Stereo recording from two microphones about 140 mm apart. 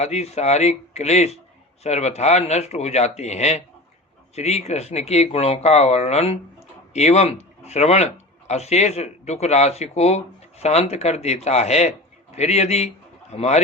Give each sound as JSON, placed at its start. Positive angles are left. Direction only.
{"t": 0.0, "sound": "speech", "side_deg": 50}